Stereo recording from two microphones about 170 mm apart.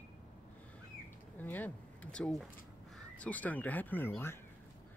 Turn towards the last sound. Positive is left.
turn(degrees=15)  # may be behind; listen again after turning